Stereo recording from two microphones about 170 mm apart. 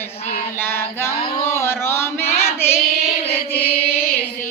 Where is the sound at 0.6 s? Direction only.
15° left (ahead or behind).